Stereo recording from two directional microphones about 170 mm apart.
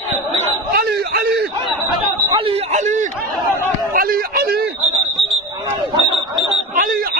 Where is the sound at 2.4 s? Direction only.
30° right (ahead or behind).